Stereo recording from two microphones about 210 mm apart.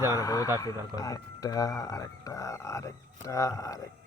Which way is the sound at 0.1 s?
15° left (ahead or behind).